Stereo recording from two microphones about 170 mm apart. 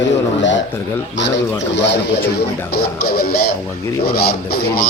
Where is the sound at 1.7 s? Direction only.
85° left.